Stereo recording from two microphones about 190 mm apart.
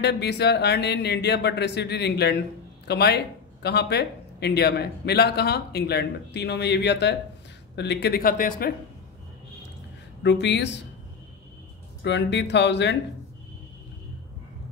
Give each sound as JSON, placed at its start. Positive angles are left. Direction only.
{"t": 0.0, "sound": "speech", "side_deg": 60}
{"t": 10.2, "sound": "speech", "side_deg": 65}
{"t": 12.0, "sound": "speech", "side_deg": 70}